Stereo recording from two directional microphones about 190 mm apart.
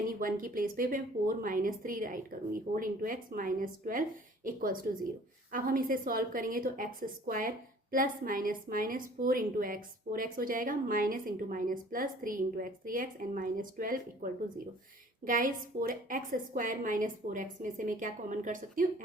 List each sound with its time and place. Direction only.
0.1 s a woman's voice: 45° right (ahead or behind)